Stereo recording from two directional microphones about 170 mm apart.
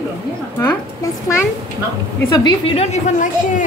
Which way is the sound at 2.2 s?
30° left (ahead or behind).